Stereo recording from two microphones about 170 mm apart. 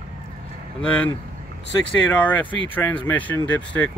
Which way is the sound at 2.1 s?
10° left (ahead or behind).